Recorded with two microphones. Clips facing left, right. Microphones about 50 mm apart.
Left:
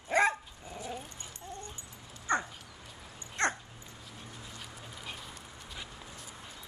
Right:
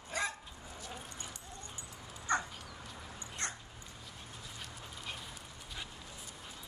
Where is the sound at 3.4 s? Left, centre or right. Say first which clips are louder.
Left 12 dB; left.